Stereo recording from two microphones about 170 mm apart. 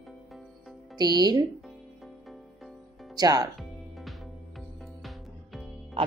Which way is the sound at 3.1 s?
25° right (ahead or behind).